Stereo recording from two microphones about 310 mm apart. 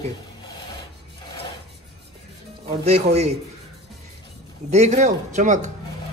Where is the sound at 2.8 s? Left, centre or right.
Centre.